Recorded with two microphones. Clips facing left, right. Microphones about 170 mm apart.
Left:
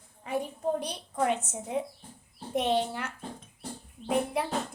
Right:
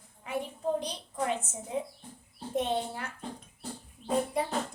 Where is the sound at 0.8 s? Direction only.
65° left (ahead or behind).